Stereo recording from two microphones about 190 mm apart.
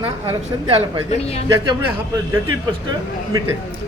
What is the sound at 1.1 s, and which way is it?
Speech, 35° left (ahead or behind).